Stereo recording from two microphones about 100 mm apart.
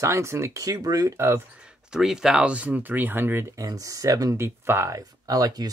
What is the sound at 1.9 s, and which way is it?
Speech, 5° right (ahead or behind).